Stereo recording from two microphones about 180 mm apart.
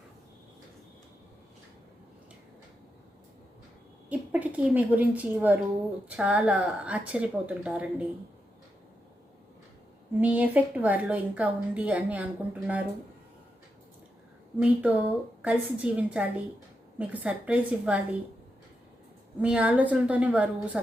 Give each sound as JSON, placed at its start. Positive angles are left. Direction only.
{"t": 4.1, "sound": "a woman's voice", "side_deg": -10}
{"t": 10.2, "sound": "a woman's voice", "side_deg": -10}
{"t": 14.6, "sound": "a woman's voice", "side_deg": -5}
{"t": 19.4, "sound": "a woman's voice", "side_deg": -5}